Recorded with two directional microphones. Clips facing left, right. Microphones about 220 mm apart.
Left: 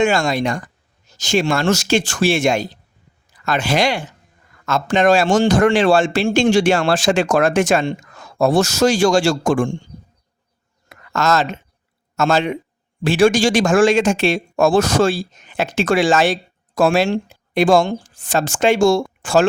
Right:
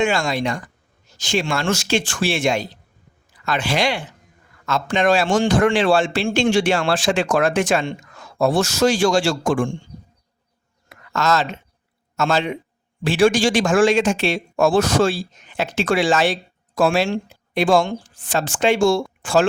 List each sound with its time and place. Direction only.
0.0 s speech: 45° left (ahead or behind)
11.1 s a man's voice: 45° left (ahead or behind)